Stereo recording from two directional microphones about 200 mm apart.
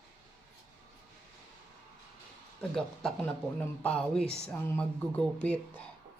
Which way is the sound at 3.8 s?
5° left (ahead or behind).